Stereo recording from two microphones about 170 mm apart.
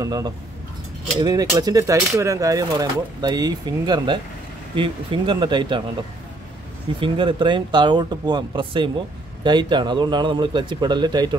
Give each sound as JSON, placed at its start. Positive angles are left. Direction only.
{"t": 0.0, "sound": "speech", "side_deg": -20}
{"t": 7.0, "sound": "speech", "side_deg": -30}